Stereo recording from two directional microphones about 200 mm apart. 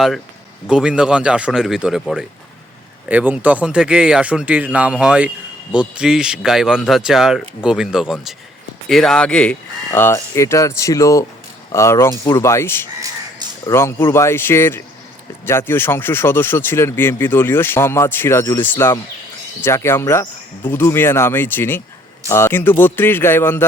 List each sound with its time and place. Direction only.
0.7 s speech: 5° right (ahead or behind)